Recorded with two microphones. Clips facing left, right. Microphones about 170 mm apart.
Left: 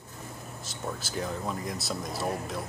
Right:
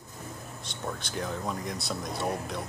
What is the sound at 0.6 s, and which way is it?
Speech, 5° left (ahead or behind).